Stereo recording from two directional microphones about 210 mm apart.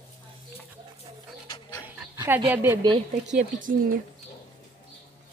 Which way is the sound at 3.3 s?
40° right (ahead or behind).